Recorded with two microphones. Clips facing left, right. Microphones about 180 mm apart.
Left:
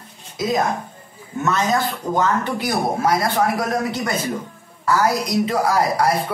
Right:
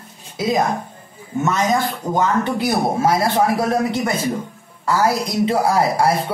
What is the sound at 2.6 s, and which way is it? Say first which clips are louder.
A woman's voice: right 2 dB; 25° right (ahead or behind).